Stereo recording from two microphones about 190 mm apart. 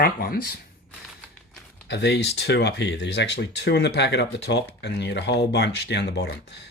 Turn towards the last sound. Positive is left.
turn(degrees=60)  # may be behind; listen again after turning